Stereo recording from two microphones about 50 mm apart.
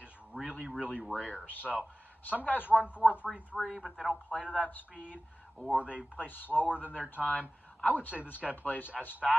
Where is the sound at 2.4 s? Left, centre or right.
Left.